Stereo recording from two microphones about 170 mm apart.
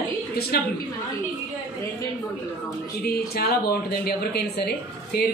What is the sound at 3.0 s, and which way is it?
Speech, 65° left (ahead or behind).